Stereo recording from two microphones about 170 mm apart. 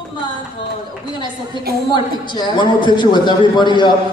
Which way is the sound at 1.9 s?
25° left (ahead or behind).